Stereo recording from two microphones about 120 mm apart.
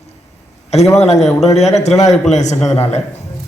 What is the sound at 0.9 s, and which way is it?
A man's voice, 65° left (ahead or behind).